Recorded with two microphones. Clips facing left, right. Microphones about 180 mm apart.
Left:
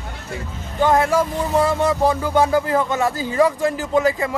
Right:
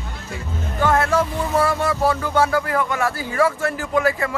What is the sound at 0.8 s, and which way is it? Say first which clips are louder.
Speech: left 2 dB; 15° left (ahead or behind).